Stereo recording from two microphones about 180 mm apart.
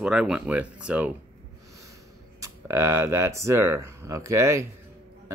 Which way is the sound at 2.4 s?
15° right (ahead or behind).